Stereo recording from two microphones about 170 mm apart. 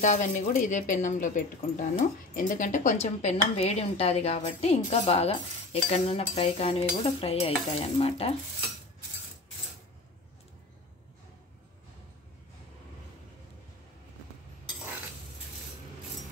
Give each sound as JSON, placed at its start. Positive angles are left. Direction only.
{"t": 0.0, "sound": "speech", "side_deg": 45}
{"t": 6.3, "sound": "stir", "side_deg": 35}